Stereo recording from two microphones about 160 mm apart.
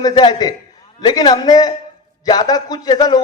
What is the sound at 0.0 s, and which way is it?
Speech, 25° left (ahead or behind).